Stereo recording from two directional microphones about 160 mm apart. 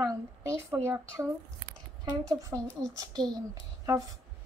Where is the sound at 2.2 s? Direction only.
20° right (ahead or behind).